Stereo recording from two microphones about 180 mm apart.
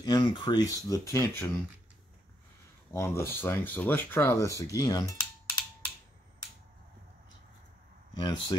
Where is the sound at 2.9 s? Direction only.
15° left (ahead or behind).